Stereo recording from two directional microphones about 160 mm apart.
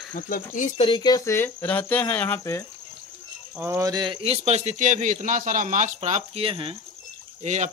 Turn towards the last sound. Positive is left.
turn(degrees=-45)  # may be behind; listen again after turning